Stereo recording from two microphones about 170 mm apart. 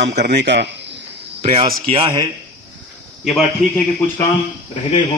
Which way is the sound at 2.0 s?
30° right (ahead or behind).